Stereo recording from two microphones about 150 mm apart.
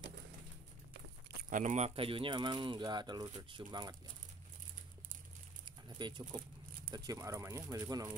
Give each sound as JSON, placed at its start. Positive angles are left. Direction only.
{"t": 1.5, "sound": "speech", "side_deg": -55}
{"t": 2.0, "sound": "speech", "side_deg": -35}
{"t": 5.7, "sound": "a sound", "side_deg": -30}
{"t": 6.9, "sound": "speech", "side_deg": -20}